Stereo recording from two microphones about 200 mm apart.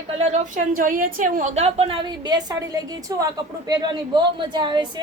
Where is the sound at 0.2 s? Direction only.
40° right (ahead or behind).